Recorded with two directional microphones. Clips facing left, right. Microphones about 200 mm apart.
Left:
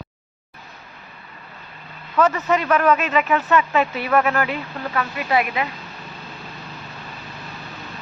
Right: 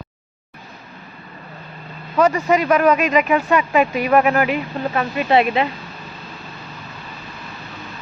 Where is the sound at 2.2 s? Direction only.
10° right (ahead or behind); by 5.7 s 25° right (ahead or behind).